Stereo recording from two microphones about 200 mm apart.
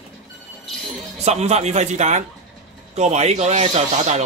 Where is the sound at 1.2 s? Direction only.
35° right (ahead or behind).